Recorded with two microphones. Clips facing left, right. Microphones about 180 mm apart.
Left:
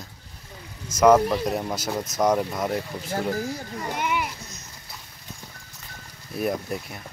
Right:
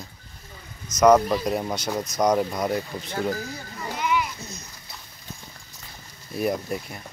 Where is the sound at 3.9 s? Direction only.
55° left (ahead or behind).